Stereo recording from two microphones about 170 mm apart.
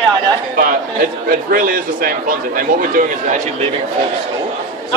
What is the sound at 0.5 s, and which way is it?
A man's voice, 55° right (ahead or behind).